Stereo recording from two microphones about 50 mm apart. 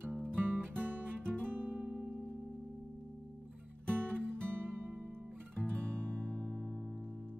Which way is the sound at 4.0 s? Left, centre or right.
Right.